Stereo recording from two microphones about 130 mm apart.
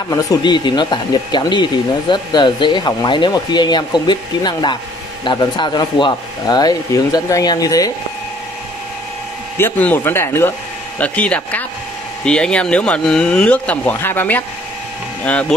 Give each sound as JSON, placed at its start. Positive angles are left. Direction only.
{"t": 0.1, "sound": "speech", "side_deg": 25}
{"t": 9.6, "sound": "speech", "side_deg": 15}